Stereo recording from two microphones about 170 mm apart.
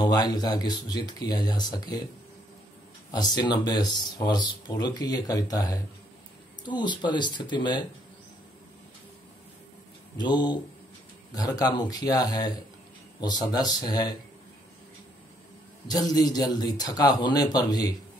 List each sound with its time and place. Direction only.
0.0 s a man's voice: 25° left (ahead or behind)
3.1 s a man's voice: 25° left (ahead or behind)
10.1 s a man's voice: 25° left (ahead or behind)
15.9 s a man's voice: 20° left (ahead or behind)